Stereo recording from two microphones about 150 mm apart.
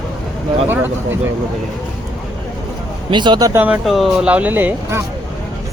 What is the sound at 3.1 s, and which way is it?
Speech, 30° right (ahead or behind).